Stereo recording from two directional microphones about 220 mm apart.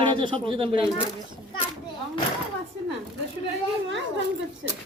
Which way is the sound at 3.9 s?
55° right (ahead or behind).